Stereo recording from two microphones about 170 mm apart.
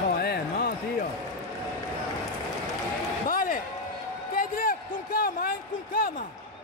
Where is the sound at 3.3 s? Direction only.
55° left (ahead or behind).